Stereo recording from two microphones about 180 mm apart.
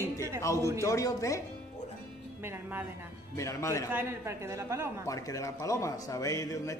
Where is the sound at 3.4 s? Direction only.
15° left (ahead or behind).